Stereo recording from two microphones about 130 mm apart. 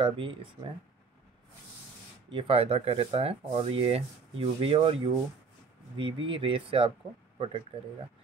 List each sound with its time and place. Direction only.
0.0 s speech: 40° right (ahead or behind)
2.3 s speech: 50° right (ahead or behind)